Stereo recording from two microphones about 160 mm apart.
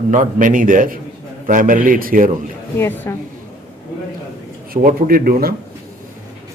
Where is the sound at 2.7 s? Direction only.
15° left (ahead or behind).